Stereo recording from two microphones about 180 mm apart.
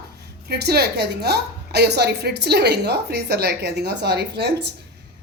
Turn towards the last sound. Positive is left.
turn(degrees=-70)  # may be behind; listen again after turning